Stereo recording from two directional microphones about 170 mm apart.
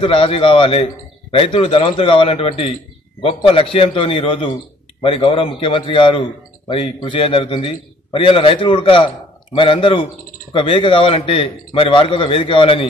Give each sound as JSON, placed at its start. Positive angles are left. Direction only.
{"t": 0.0, "sound": "a man's voice", "side_deg": 30}